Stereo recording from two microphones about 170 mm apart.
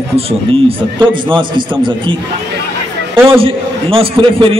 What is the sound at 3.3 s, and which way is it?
A man's voice, 35° right (ahead or behind).